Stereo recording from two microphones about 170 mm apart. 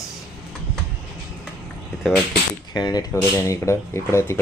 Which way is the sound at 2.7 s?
25° left (ahead or behind).